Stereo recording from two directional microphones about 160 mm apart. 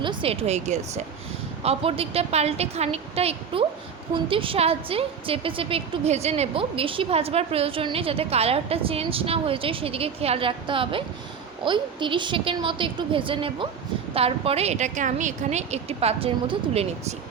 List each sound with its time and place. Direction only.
0.0 s a woman's voice: 30° right (ahead or behind)